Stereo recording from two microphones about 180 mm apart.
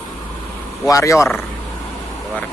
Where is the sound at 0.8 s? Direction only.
15° left (ahead or behind).